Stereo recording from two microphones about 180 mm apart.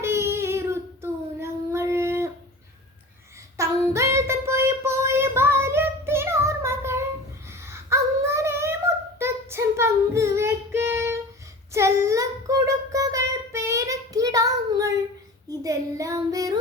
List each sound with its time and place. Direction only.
0.0 s child singing: 15° right (ahead or behind)
3.6 s child singing: 15° right (ahead or behind)
7.4 s a sound: 15° right (ahead or behind)
9.1 s child singing: 15° right (ahead or behind)